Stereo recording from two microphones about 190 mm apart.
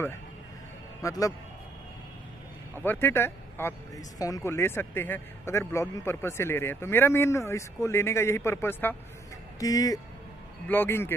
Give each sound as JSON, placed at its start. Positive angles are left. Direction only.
{"t": 1.0, "sound": "speech", "side_deg": 15}
{"t": 2.8, "sound": "speech", "side_deg": 10}